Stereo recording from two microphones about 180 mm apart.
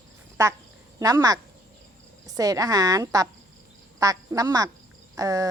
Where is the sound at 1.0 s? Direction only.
20° right (ahead or behind).